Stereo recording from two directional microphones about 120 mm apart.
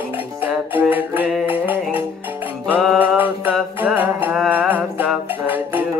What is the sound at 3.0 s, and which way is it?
Music, 15° right (ahead or behind).